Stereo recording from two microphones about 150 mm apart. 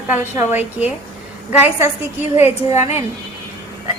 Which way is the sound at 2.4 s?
50° left (ahead or behind).